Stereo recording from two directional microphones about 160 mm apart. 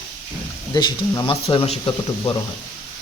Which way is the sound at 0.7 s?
25° left (ahead or behind).